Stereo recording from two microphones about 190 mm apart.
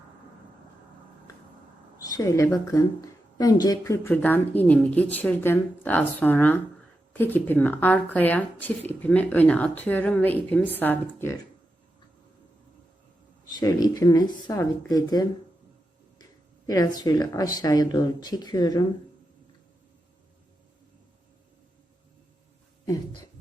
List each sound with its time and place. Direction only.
2.0 s speech: 15° left (ahead or behind)
13.6 s speech: 20° left (ahead or behind)
16.6 s speech: 20° left (ahead or behind)